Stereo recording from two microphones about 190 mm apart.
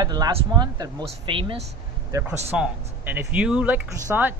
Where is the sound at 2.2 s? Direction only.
5° right (ahead or behind).